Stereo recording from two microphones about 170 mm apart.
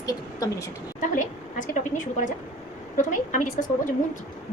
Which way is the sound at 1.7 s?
50° left (ahead or behind).